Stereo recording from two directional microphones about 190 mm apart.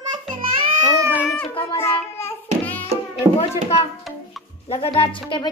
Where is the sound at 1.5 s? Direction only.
30° left (ahead or behind).